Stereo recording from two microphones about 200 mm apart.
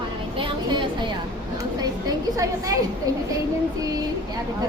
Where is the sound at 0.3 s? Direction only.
25° right (ahead or behind).